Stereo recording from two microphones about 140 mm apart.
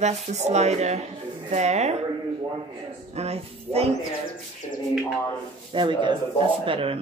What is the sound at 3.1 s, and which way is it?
Speech, 50° right (ahead or behind).